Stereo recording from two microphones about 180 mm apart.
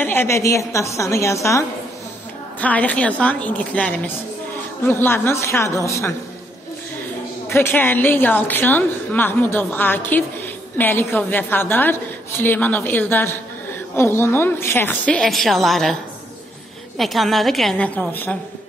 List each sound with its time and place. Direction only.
0.0 s a woman's voice: 10° left (ahead or behind)
2.6 s a woman's voice: 10° left (ahead or behind)
7.4 s a woman's voice: 10° left (ahead or behind)